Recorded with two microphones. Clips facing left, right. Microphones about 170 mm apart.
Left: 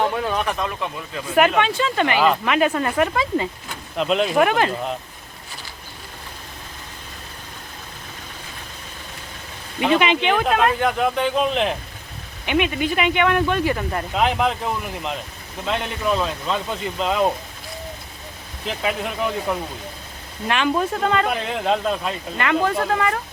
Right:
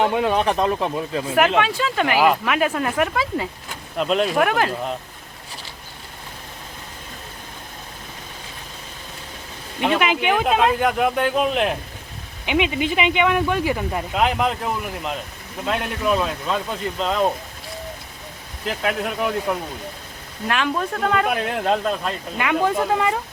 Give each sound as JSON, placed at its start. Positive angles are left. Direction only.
{"t": 0.0, "sound": "speech", "side_deg": -20}
{"t": 1.4, "sound": "speech", "side_deg": -5}
{"t": 9.8, "sound": "speech", "side_deg": 0}
{"t": 18.6, "sound": "speech", "side_deg": 0}
{"t": 21.0, "sound": "speech", "side_deg": -5}
{"t": 22.4, "sound": "speech", "side_deg": -10}